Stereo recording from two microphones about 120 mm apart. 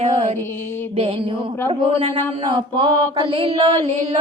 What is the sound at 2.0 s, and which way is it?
Mantra, 40° right (ahead or behind).